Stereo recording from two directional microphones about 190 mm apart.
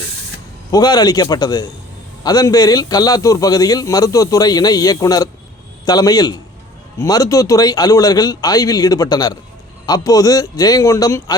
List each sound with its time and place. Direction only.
0.7 s a man's voice: 20° left (ahead or behind)